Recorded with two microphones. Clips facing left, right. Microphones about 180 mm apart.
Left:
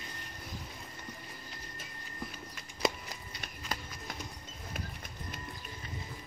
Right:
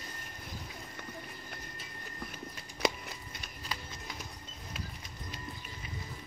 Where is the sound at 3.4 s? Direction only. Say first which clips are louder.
Left 4 dB; 50° left (ahead or behind).